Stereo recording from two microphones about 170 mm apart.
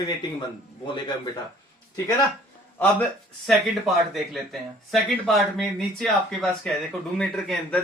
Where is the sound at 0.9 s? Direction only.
25° left (ahead or behind).